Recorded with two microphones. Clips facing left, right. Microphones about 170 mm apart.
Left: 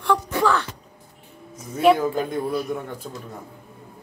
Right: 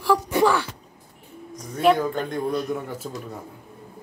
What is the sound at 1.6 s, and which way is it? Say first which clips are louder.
A man's voice: left 2 dB; 5° left (ahead or behind).